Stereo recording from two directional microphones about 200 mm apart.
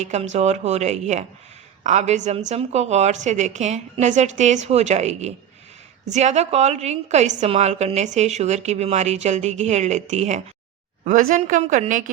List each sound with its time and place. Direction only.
0.0 s a woman's voice: 35° right (ahead or behind)